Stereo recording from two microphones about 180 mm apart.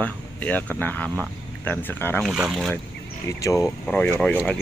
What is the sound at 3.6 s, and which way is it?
Speech, 5° left (ahead or behind).